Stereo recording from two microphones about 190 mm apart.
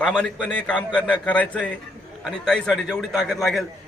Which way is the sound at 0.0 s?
5° left (ahead or behind).